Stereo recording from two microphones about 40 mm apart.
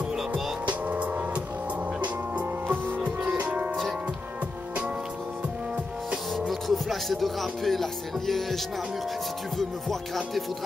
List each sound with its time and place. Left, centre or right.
0.3 s music: right
3.4 s music: right
6.5 s music: centre
7.2 s speech: centre
9.6 s speech: centre